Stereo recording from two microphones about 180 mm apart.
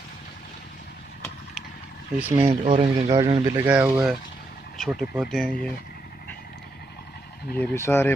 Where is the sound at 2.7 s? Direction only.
30° right (ahead or behind); by 5.7 s 5° left (ahead or behind).